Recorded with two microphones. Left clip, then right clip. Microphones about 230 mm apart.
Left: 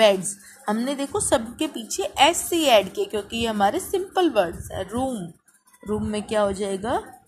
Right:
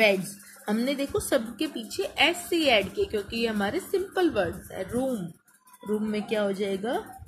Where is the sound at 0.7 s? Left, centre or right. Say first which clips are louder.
Left 2 dB; centre.